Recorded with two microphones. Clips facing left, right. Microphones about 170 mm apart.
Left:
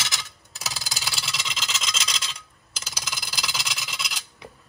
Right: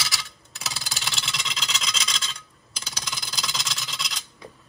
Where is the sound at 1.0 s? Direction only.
5° left (ahead or behind).